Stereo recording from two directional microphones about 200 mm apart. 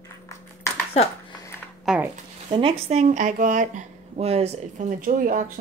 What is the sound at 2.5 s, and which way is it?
Speech, 30° right (ahead or behind).